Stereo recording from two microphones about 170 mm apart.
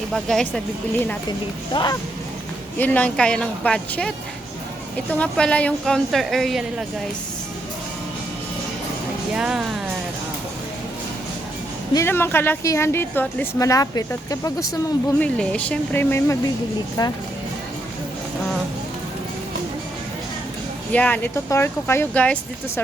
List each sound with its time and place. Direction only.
0.1 s a woman's voice: 5° left (ahead or behind)
1.7 s speech: 25° left (ahead or behind)
2.7 s a woman's voice: 10° left (ahead or behind)
9.3 s a woman's voice: 5° right (ahead or behind)
11.9 s a woman's voice: 15° left (ahead or behind)
15.2 s a woman's voice: 5° left (ahead or behind)
20.9 s a woman's voice: 10° left (ahead or behind)